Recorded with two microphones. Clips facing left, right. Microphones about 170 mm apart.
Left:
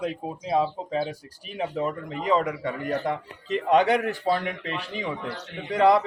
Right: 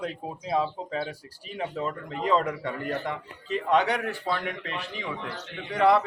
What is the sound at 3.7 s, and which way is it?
A man's voice, 40° left (ahead or behind).